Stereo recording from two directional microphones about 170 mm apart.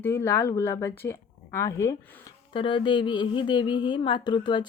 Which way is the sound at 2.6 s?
30° left (ahead or behind).